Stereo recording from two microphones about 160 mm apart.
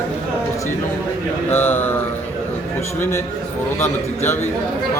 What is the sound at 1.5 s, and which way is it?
Speech, 10° left (ahead or behind).